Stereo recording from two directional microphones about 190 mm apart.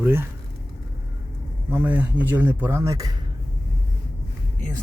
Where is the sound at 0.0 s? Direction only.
10° right (ahead or behind).